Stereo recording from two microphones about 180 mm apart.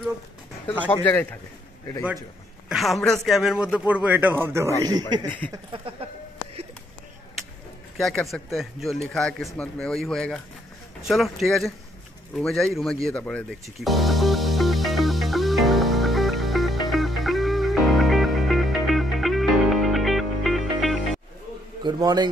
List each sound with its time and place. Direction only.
1.0 s a man's voice: 10° left (ahead or behind)
2.7 s a man's voice: centre (ahead or behind); by 5.0 s 20° right (ahead or behind)
5.2 s a man's voice: 10° left (ahead or behind)
5.5 s speech: 30° right (ahead or behind)
8.0 s speech: centre (ahead or behind)
12.4 s music: centre (ahead or behind)
21.8 s speech: 25° right (ahead or behind)